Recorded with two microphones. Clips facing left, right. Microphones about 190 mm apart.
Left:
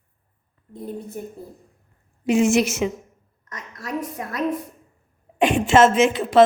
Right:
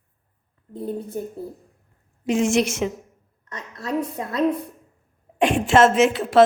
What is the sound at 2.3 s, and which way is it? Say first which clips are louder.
Speech: left 2 dB; 5° left (ahead or behind).